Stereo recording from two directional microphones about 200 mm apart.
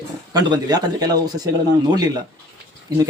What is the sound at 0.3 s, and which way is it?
Speech, 20° right (ahead or behind).